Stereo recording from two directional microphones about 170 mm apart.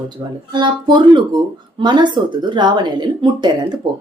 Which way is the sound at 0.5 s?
25° right (ahead or behind).